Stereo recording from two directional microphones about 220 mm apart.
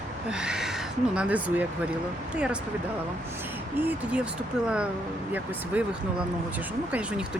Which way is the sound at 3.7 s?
5° right (ahead or behind).